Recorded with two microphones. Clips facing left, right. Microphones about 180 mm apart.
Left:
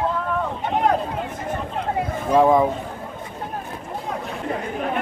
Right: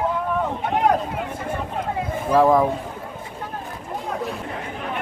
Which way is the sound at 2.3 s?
Centre (ahead or behind).